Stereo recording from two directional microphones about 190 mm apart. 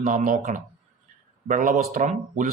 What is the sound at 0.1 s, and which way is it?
Speech, 45° right (ahead or behind).